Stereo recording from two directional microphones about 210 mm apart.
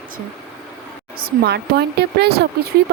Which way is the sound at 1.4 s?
50° right (ahead or behind).